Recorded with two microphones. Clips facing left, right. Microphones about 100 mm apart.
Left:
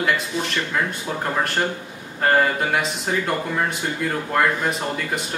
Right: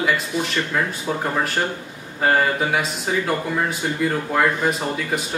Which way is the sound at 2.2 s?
Centre (ahead or behind).